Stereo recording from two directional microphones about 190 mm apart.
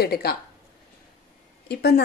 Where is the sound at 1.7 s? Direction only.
60° left (ahead or behind).